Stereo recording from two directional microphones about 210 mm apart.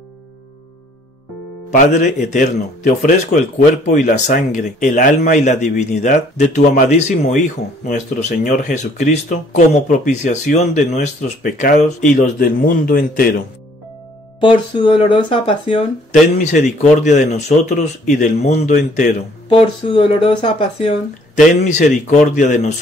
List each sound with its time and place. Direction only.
1.7 s a man's voice: 35° left (ahead or behind)
14.8 s speech: 25° left (ahead or behind)
16.6 s a man's voice: 35° left (ahead or behind)
19.5 s speech: 25° left (ahead or behind)
21.6 s a man's voice: 35° left (ahead or behind)